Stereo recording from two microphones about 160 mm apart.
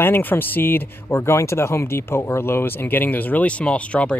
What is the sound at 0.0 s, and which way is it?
Speech, 10° left (ahead or behind).